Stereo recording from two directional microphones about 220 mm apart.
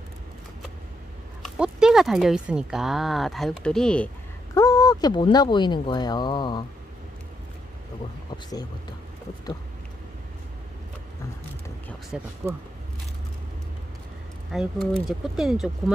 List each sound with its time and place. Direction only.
1.4 s speech: 5° right (ahead or behind)
4.6 s speech: 20° left (ahead or behind)
12.1 s speech: 5° right (ahead or behind)
14.5 s speech: centre (ahead or behind)